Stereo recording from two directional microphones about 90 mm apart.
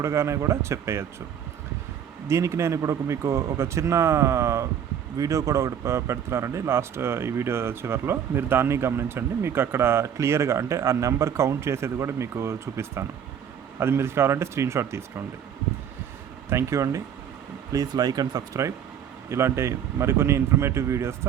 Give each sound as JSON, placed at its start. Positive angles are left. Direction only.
{"t": 0.0, "sound": "a man's voice", "side_deg": -35}
{"t": 2.2, "sound": "a man's voice", "side_deg": -35}
{"t": 16.5, "sound": "a man's voice", "side_deg": -35}
{"t": 17.7, "sound": "a man's voice", "side_deg": -45}